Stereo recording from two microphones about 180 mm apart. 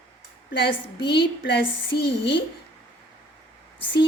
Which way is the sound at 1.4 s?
80° left.